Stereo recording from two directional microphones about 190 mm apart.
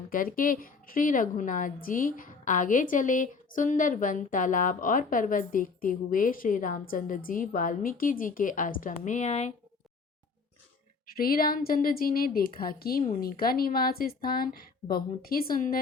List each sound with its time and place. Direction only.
0.1 s a woman's voice: 50° left (ahead or behind)
11.2 s a woman's voice: 50° left (ahead or behind)